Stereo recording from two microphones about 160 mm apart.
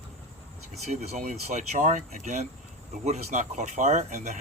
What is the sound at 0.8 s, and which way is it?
Speech, 45° right (ahead or behind).